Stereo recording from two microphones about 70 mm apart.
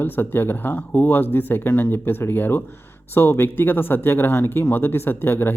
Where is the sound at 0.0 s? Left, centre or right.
Left.